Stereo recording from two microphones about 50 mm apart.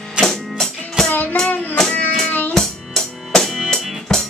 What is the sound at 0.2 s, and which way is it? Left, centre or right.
Music, centre.